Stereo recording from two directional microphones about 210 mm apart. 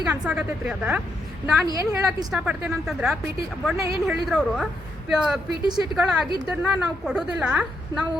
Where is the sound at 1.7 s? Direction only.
15° right (ahead or behind).